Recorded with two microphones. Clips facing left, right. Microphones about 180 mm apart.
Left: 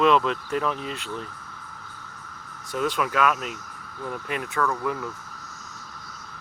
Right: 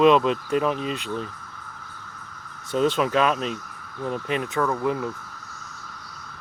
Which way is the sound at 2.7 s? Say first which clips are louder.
Right 4 dB; 25° right (ahead or behind).